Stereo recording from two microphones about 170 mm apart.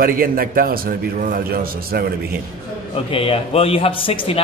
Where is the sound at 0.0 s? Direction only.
60° right (ahead or behind).